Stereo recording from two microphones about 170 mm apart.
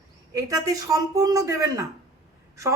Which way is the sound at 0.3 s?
20° right (ahead or behind).